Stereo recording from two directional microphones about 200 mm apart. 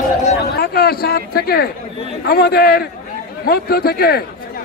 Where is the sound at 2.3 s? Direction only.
50° left (ahead or behind).